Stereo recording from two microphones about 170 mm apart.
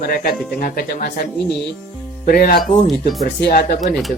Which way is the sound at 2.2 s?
60° left (ahead or behind).